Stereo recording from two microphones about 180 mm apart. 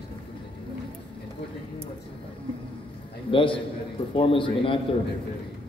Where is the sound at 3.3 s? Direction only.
30° left (ahead or behind).